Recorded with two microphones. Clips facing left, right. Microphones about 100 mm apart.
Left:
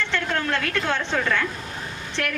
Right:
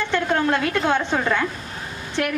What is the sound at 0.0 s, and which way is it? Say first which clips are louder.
A woman's voice: right 5 dB; 15° right (ahead or behind).